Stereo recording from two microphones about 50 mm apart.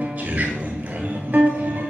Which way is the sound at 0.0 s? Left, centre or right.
Right.